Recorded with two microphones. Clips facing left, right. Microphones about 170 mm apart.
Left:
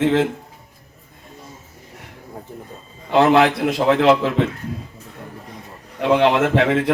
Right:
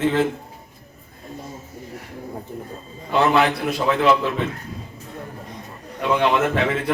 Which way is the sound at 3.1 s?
90° left.